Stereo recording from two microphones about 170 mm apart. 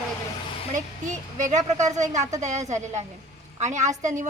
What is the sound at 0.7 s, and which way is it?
Speech, 45° right (ahead or behind).